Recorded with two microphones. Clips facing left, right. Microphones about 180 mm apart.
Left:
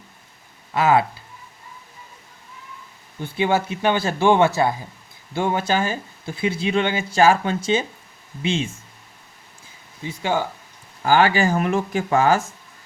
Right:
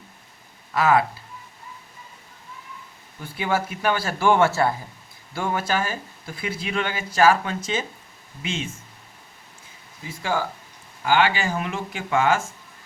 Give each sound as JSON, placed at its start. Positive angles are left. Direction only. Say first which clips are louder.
{"t": 0.7, "sound": "speech", "louder": "left 2 dB", "side_deg": 25}
{"t": 3.2, "sound": "speech", "louder": "left 4 dB", "side_deg": 25}
{"t": 10.0, "sound": "speech", "louder": "left 3 dB", "side_deg": 25}
{"t": 11.0, "sound": "speech", "louder": "left 4 dB", "side_deg": 40}